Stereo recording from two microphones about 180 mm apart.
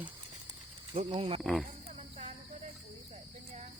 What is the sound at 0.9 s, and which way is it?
Speech, 35° right (ahead or behind).